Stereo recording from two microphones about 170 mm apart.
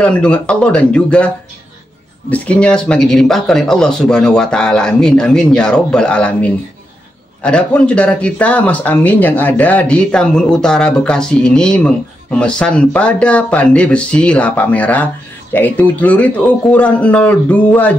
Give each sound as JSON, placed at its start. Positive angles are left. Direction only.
{"t": 0.0, "sound": "speech", "side_deg": 5}